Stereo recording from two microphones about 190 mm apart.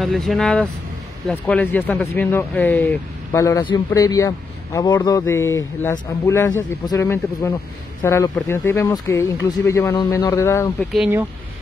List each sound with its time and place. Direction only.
0.0 s a man's voice: centre (ahead or behind)